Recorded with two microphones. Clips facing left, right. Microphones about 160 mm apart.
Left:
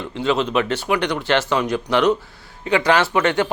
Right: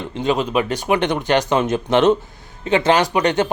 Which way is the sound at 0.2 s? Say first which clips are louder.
Right 1 dB; 15° right (ahead or behind).